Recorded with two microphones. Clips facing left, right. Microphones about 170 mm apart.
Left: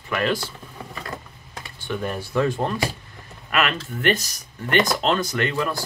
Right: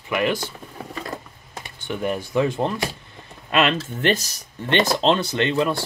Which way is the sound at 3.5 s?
30° right (ahead or behind).